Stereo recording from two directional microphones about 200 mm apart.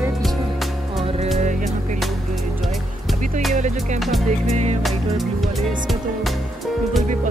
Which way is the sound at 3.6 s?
35° right (ahead or behind).